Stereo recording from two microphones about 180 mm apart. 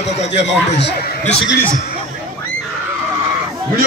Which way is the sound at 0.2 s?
80° left.